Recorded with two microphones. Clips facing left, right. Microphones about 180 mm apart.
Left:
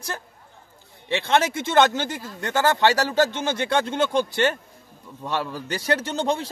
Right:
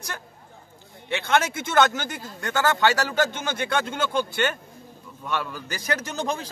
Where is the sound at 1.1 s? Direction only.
25° left (ahead or behind).